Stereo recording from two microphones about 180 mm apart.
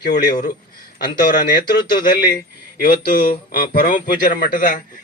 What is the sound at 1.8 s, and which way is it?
Speech, 25° left (ahead or behind).